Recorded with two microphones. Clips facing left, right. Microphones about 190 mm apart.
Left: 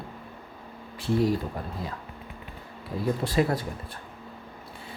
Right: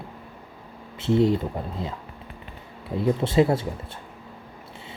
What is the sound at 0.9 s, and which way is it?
Speech, 25° right (ahead or behind).